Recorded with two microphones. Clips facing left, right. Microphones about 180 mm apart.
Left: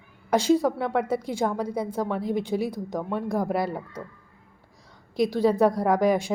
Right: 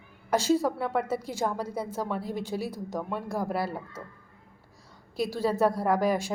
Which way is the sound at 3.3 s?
15° left (ahead or behind).